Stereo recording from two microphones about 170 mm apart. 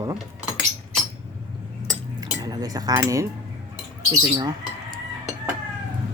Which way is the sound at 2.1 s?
20° right (ahead or behind).